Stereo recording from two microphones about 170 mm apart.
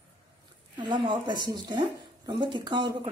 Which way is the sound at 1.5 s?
25° right (ahead or behind).